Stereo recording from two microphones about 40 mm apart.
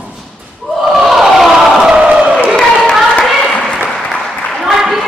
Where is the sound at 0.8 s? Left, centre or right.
Centre.